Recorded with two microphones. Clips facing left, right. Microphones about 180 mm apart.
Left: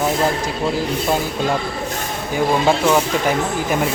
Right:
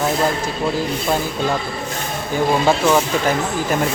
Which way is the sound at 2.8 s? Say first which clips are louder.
Even; 10° left (ahead or behind).